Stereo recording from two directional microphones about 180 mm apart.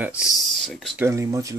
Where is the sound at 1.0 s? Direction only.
15° right (ahead or behind).